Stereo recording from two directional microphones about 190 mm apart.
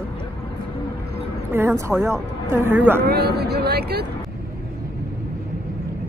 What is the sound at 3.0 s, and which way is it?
Speech, 55° right (ahead or behind).